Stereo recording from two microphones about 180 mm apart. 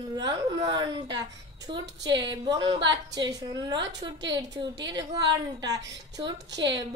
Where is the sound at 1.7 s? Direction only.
25° right (ahead or behind).